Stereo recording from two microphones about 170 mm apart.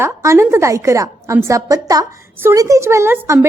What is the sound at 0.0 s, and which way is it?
A woman's voice, 15° right (ahead or behind).